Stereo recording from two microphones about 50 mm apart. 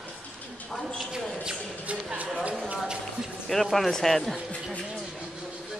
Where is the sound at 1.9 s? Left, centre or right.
Right.